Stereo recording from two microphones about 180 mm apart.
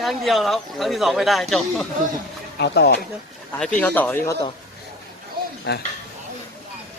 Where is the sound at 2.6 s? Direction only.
65° left (ahead or behind).